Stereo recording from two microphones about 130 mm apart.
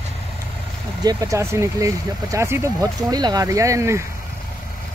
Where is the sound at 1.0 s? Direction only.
25° right (ahead or behind).